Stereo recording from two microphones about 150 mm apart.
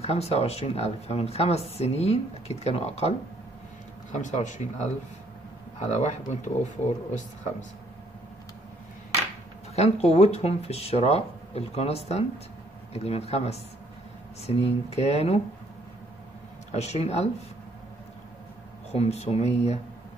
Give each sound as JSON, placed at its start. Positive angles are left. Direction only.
{"t": 0.0, "sound": "a woman's voice", "side_deg": 40}
{"t": 4.1, "sound": "a woman's voice", "side_deg": 55}
{"t": 9.8, "sound": "a woman's voice", "side_deg": 45}
{"t": 16.7, "sound": "a woman's voice", "side_deg": 45}
{"t": 18.9, "sound": "a woman's voice", "side_deg": 45}